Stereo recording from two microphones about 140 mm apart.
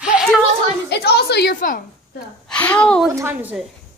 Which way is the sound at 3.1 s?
15° right (ahead or behind).